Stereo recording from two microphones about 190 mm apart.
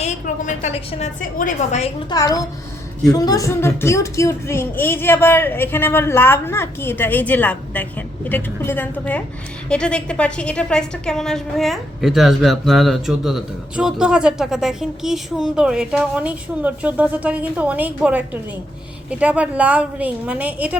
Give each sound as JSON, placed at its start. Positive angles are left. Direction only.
{"t": 0.0, "sound": "a woman's voice", "side_deg": 40}
{"t": 2.0, "sound": "a woman's voice", "side_deg": 20}